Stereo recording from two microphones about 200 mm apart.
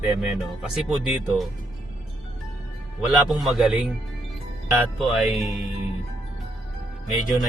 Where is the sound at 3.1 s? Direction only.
Centre (ahead or behind).